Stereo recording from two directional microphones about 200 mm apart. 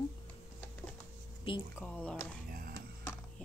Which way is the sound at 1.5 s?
25° left (ahead or behind).